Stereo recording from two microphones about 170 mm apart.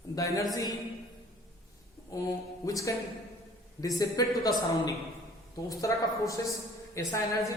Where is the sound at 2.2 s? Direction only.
20° left (ahead or behind).